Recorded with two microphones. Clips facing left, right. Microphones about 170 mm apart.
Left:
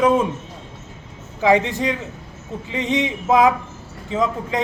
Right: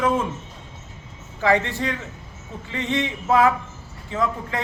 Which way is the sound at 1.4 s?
15° left (ahead or behind).